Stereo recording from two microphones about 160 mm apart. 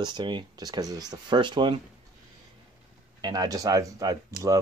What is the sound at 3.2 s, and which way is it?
Speech, 25° right (ahead or behind).